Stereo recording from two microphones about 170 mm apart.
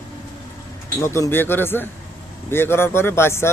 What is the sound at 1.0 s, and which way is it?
Speech, 15° left (ahead or behind).